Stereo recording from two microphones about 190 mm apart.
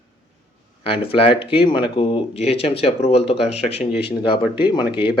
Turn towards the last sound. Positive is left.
turn(degrees=25)  # may be behind; listen again after turning